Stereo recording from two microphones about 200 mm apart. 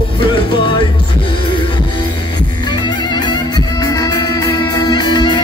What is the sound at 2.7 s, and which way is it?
Music, 20° left (ahead or behind).